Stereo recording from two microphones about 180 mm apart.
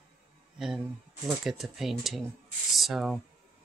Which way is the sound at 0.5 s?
Centre (ahead or behind).